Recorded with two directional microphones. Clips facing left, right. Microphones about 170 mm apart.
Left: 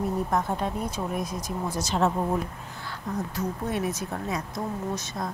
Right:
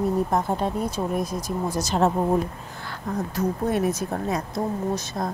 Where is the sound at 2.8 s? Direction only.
50° right (ahead or behind).